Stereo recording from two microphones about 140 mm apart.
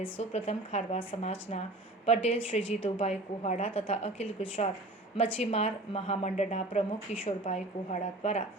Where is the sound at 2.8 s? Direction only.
50° left (ahead or behind).